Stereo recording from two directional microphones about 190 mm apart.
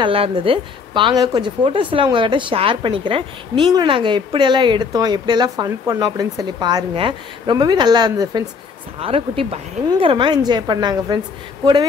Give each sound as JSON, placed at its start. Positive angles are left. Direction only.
{"t": 0.0, "sound": "speech", "side_deg": -30}